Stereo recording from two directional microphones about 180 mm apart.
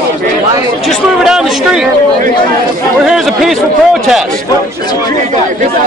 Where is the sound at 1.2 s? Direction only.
Centre (ahead or behind).